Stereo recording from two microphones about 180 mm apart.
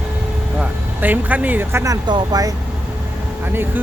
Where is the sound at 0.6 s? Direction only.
10° right (ahead or behind).